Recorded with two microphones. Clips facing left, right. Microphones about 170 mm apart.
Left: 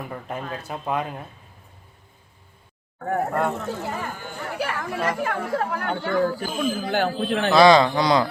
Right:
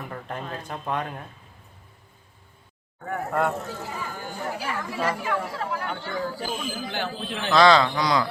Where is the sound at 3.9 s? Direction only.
60° left (ahead or behind).